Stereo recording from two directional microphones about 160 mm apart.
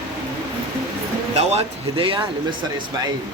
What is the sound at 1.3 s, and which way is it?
Speech, 35° right (ahead or behind).